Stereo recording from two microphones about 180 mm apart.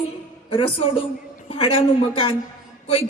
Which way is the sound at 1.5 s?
35° left (ahead or behind).